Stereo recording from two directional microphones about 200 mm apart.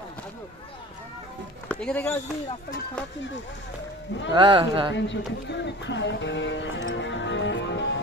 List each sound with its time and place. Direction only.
1.7 s speech: 5° left (ahead or behind)
4.3 s speech: 20° right (ahead or behind)
4.9 s speech: 60° left (ahead or behind)